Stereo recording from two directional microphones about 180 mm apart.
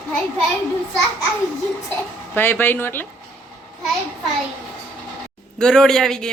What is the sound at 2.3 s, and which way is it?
Speech, 10° left (ahead or behind).